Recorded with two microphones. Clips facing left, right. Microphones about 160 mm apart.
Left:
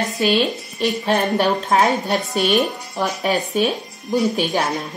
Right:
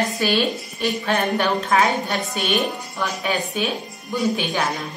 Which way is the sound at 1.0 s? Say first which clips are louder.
Left 3 dB; 35° left (ahead or behind).